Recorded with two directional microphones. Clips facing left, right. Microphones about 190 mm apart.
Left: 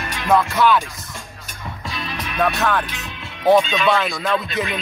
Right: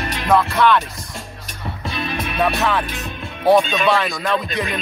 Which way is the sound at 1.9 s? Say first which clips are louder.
Right 5 dB; 55° right (ahead or behind).